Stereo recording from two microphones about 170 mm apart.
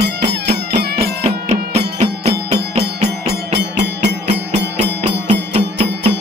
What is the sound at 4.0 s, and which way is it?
Music, 40° right (ahead or behind).